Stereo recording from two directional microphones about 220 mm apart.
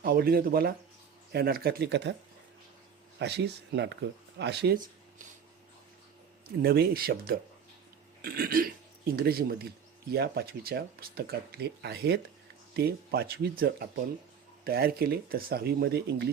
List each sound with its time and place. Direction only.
0.0 s speech: 45° right (ahead or behind)
3.2 s speech: 50° right (ahead or behind)
6.6 s speech: 45° right (ahead or behind)